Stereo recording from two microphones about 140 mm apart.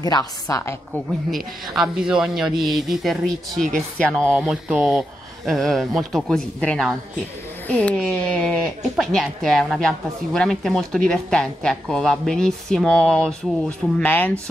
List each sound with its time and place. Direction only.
0.0 s a woman's voice: 25° left (ahead or behind)
1.3 s a woman's voice: centre (ahead or behind)